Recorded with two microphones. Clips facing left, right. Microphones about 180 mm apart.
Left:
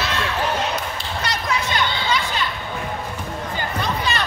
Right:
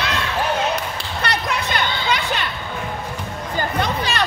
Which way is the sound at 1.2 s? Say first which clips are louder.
Right 1 dB; 60° right (ahead or behind).